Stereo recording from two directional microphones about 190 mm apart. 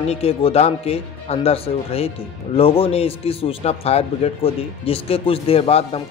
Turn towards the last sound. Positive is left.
turn(degrees=30)  # may be behind; listen again after turning